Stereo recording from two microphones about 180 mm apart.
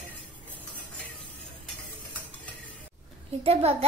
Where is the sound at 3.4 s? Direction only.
35° right (ahead or behind).